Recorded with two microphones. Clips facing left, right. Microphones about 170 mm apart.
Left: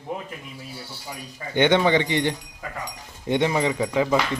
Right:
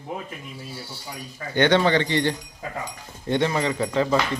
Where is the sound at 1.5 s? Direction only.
20° left (ahead or behind).